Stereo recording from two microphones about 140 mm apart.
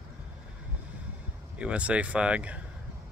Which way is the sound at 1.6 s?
10° right (ahead or behind).